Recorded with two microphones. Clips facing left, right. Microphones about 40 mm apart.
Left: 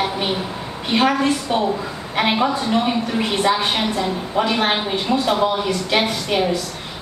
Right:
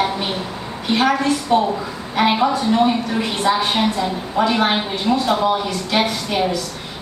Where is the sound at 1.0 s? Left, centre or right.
Left.